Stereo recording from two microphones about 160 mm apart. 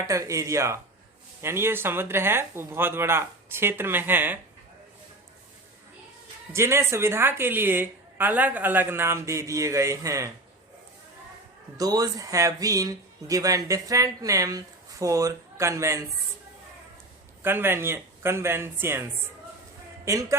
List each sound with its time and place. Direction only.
0.1 s a woman's voice: 20° right (ahead or behind)
6.5 s a woman's voice: 15° right (ahead or behind)
11.8 s speech: 25° right (ahead or behind)
17.4 s a woman's voice: 15° right (ahead or behind)
20.1 s speech: 20° right (ahead or behind)